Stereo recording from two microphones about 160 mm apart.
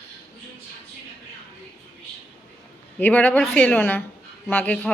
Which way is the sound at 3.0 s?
10° left (ahead or behind).